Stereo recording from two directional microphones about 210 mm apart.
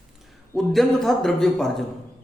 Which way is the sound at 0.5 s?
Centre (ahead or behind).